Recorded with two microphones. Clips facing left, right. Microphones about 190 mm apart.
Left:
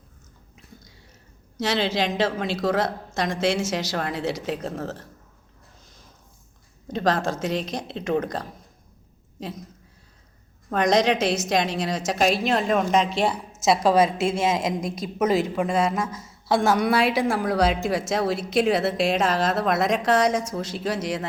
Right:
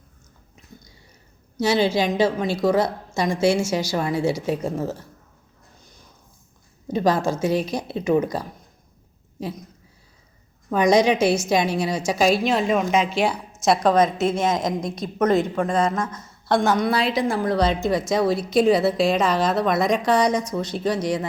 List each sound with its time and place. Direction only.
1.5 s a woman's voice: centre (ahead or behind)
6.8 s a woman's voice: centre (ahead or behind)
10.7 s a woman's voice: centre (ahead or behind)
14.2 s speech: 30° left (ahead or behind)
14.8 s a woman's voice: 5° left (ahead or behind)